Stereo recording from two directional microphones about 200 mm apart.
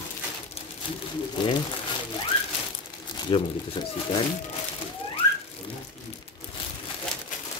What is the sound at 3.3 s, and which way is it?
Speech, 25° left (ahead or behind).